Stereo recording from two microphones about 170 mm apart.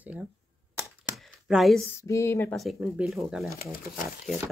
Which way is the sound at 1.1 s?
Centre (ahead or behind).